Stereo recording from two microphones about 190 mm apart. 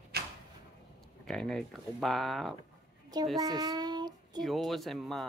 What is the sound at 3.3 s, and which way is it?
Child singing, 20° right (ahead or behind).